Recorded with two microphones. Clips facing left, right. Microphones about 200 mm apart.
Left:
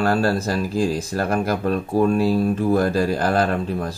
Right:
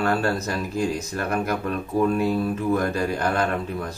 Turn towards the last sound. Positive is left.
turn(degrees=30)  # may be behind; listen again after turning